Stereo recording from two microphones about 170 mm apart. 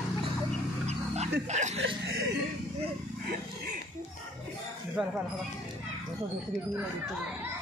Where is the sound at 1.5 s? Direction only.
45° right (ahead or behind).